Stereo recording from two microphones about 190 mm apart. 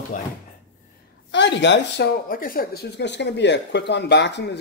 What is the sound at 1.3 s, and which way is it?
Speech, 65° left (ahead or behind).